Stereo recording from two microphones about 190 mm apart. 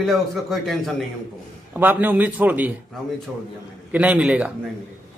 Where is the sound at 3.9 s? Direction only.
5° right (ahead or behind).